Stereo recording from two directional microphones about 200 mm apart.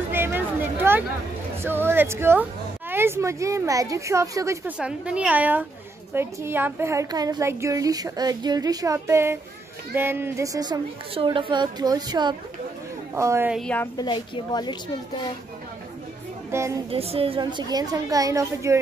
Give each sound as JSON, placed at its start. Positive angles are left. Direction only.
{"t": 0.1, "sound": "a sound", "side_deg": -10}
{"t": 1.6, "sound": "a woman's voice", "side_deg": -10}
{"t": 4.7, "sound": "a woman's voice", "side_deg": -5}
{"t": 13.6, "sound": "a woman's voice", "side_deg": 5}
{"t": 13.9, "sound": "a woman's voice", "side_deg": 25}
{"t": 16.4, "sound": "music", "side_deg": -15}
{"t": 16.9, "sound": "a woman's voice", "side_deg": -30}